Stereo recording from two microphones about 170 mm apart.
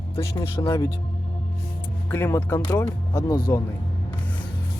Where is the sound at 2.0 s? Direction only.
15° left (ahead or behind).